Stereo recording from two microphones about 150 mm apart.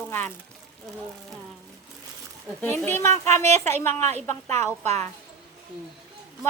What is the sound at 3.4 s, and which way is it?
Speech, 50° right (ahead or behind).